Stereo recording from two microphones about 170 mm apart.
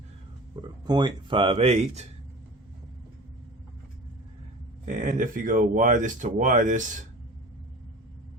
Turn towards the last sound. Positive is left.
turn(degrees=-45)  # may be behind; listen again after turning